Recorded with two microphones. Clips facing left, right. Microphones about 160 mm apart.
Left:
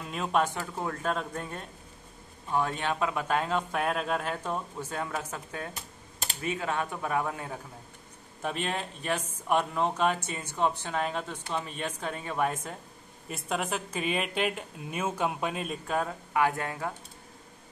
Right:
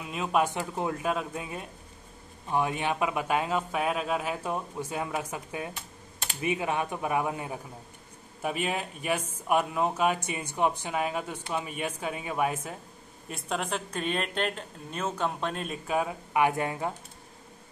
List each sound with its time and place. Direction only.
0.0 s speech: 5° right (ahead or behind)
0.5 s speech: 15° right (ahead or behind)